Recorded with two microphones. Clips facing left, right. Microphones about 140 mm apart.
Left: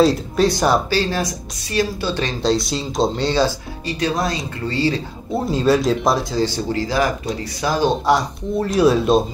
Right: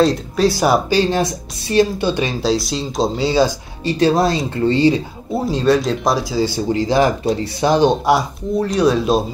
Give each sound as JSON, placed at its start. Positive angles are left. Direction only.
{"t": 0.0, "sound": "speech", "side_deg": 0}
{"t": 0.8, "sound": "speech", "side_deg": -20}
{"t": 2.4, "sound": "speech", "side_deg": 0}
{"t": 3.8, "sound": "speech", "side_deg": -30}
{"t": 4.6, "sound": "speech", "side_deg": -20}
{"t": 5.3, "sound": "speech", "side_deg": 0}
{"t": 8.0, "sound": "speech", "side_deg": -10}
{"t": 8.5, "sound": "speech", "side_deg": 0}